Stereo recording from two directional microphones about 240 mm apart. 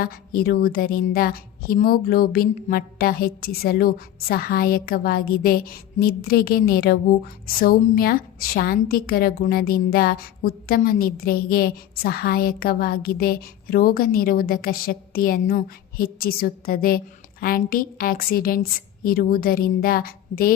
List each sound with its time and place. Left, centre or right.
0.0 s a woman's voice: left